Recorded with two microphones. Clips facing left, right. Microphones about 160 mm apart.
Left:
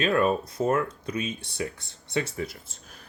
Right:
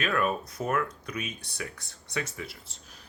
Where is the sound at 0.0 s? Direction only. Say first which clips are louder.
Left 5 dB; 30° left (ahead or behind).